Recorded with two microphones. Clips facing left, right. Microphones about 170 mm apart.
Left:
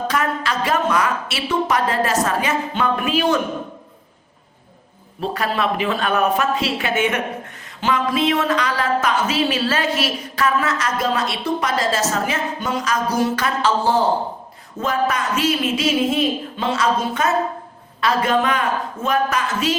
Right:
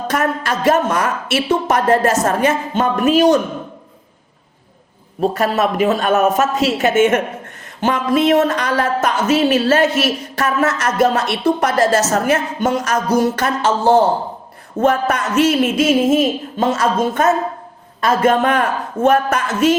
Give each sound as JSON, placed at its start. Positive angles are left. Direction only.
{"t": 0.1, "sound": "a woman's voice", "side_deg": -50}
{"t": 5.2, "sound": "a woman's voice", "side_deg": -45}
{"t": 10.8, "sound": "a woman's voice", "side_deg": -70}